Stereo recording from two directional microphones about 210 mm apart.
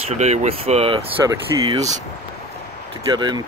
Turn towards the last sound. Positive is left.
turn(degrees=-20)  # may be behind; listen again after turning